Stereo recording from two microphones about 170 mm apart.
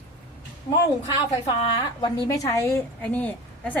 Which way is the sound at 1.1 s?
25° left (ahead or behind).